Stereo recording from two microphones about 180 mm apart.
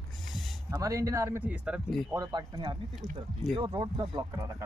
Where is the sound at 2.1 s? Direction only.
20° right (ahead or behind).